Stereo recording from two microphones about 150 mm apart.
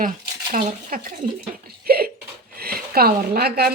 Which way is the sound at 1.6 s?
90° right.